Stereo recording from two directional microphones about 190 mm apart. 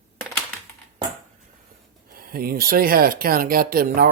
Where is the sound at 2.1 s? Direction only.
50° right (ahead or behind).